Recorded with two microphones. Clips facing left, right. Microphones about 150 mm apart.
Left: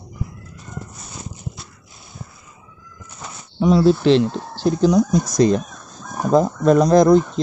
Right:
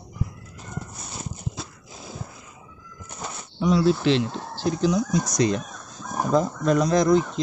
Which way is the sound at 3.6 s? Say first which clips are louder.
Left 6 dB; 30° left (ahead or behind).